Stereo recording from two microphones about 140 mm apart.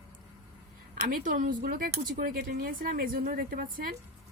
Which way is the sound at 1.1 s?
70° right (ahead or behind).